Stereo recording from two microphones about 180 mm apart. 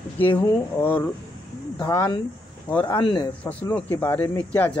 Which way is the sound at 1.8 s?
15° left (ahead or behind).